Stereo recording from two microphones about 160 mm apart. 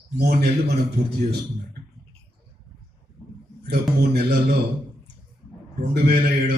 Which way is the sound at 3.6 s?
90° right.